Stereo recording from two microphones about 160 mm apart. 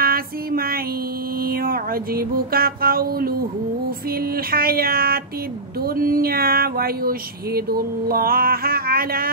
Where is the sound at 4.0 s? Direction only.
70° right (ahead or behind).